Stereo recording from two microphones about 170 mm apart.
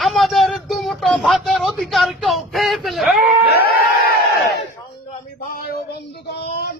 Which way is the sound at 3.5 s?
65° left (ahead or behind).